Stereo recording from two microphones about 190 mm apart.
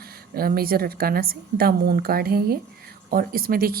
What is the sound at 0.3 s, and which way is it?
A woman's voice, 50° right (ahead or behind).